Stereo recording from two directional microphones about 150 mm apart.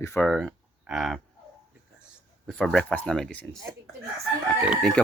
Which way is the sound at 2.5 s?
5° left (ahead or behind).